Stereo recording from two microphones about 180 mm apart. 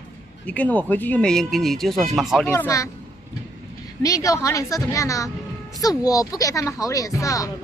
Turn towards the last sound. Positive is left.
turn(degrees=15)  # may be behind; listen again after turning